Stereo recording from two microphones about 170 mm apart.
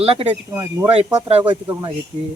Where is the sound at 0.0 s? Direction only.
35° right (ahead or behind).